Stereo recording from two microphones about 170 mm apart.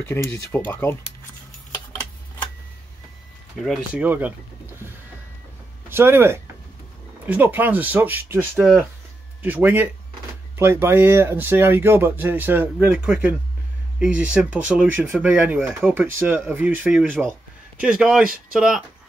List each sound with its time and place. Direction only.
0.1 s speech: 15° left (ahead or behind)
3.6 s speech: centre (ahead or behind)
4.0 s speech: 10° right (ahead or behind)
5.9 s speech: 15° right (ahead or behind)